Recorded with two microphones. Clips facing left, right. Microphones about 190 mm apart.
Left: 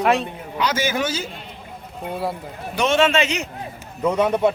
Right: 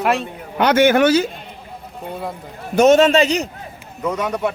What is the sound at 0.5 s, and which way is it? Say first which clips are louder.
Speech: right 9 dB; 60° right (ahead or behind).